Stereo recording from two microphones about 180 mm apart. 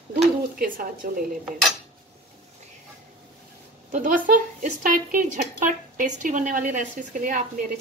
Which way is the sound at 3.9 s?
45° right (ahead or behind).